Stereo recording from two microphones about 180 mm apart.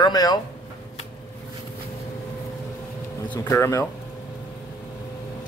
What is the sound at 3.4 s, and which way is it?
Speech, 15° left (ahead or behind).